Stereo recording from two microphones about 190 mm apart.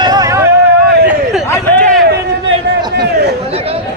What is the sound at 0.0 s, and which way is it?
Vehicle, 20° right (ahead or behind).